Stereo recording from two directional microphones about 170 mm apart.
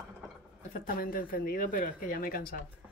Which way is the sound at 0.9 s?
55° left (ahead or behind).